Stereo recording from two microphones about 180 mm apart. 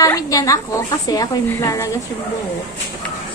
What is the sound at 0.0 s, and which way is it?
A woman's voice, 20° left (ahead or behind).